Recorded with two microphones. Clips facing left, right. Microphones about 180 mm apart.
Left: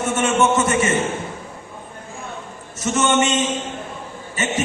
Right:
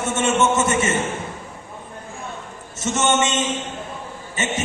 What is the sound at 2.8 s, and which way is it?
Speech, 25° right (ahead or behind).